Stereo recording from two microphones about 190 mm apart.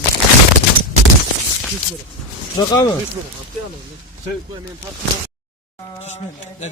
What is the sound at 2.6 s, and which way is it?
Speech, 20° left (ahead or behind).